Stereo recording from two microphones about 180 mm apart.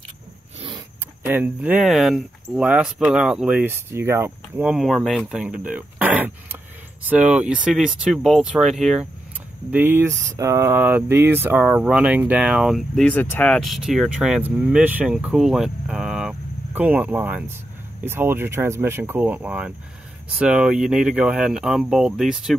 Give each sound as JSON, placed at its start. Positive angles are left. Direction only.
{"t": 0.6, "sound": "a sound", "side_deg": -30}
{"t": 1.2, "sound": "speech", "side_deg": -10}
{"t": 9.7, "sound": "speech", "side_deg": -10}